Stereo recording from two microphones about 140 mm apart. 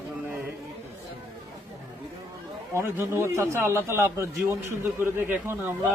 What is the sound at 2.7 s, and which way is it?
A man's voice, 20° right (ahead or behind).